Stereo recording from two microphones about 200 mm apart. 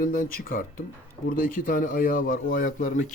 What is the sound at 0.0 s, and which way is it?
Speech, 45° left (ahead or behind).